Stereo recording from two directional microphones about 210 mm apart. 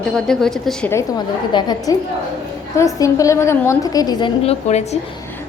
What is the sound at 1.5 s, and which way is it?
A woman's voice, 20° left (ahead or behind).